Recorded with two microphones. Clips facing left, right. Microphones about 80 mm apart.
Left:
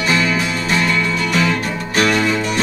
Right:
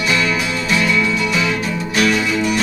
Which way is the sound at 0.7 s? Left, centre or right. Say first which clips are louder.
Right 2 dB; left.